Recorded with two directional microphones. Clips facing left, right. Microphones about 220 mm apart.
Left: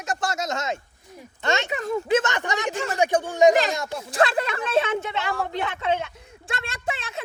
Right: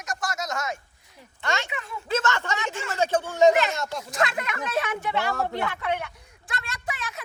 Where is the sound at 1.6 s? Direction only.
40° left (ahead or behind).